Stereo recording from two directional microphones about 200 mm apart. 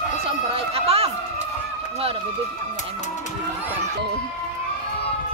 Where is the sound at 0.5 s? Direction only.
30° right (ahead or behind).